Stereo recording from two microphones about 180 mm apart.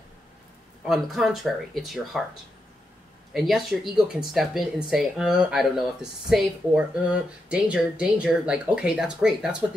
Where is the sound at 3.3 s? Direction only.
Centre (ahead or behind).